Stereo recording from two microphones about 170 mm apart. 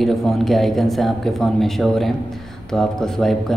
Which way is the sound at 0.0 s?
Centre (ahead or behind).